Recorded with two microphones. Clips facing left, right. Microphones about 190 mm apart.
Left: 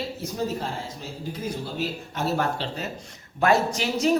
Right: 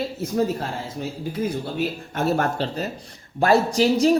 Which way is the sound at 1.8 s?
55° right (ahead or behind).